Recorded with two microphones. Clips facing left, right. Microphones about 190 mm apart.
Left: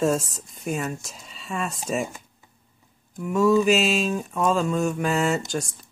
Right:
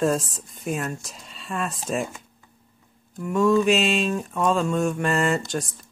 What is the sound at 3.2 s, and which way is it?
Speech, centre (ahead or behind).